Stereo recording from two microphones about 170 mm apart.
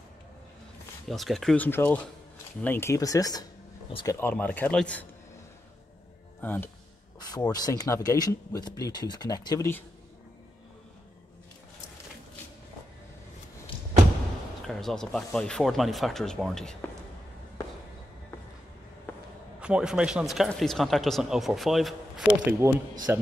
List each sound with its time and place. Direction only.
1.0 s speech: centre (ahead or behind); by 4.2 s 20° left (ahead or behind)
4.2 s speech: 10° left (ahead or behind)
6.4 s speech: 10° left (ahead or behind)
7.2 s speech: 20° left (ahead or behind)
14.7 s speech: centre (ahead or behind)
19.1 s a sound: 10° left (ahead or behind)
19.6 s a man's voice: 5° right (ahead or behind)